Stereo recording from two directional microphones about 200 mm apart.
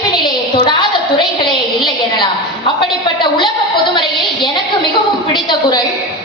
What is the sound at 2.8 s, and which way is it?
A woman's voice, 25° left (ahead or behind).